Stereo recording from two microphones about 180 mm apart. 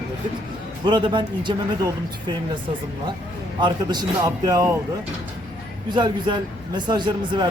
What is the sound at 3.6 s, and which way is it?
A man's voice, 25° right (ahead or behind).